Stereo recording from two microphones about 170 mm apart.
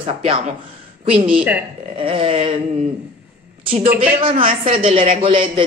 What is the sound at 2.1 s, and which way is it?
Speech, 35° right (ahead or behind).